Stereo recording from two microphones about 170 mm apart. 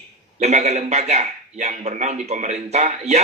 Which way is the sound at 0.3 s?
40° right (ahead or behind).